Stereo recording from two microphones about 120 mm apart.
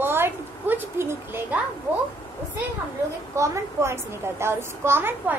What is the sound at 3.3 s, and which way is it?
A child's voice, 25° right (ahead or behind).